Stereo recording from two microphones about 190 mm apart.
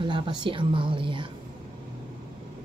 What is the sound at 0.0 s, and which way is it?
Speech, 25° right (ahead or behind).